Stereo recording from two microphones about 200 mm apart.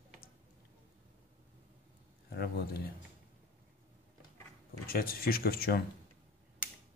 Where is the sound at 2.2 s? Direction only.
50° left (ahead or behind).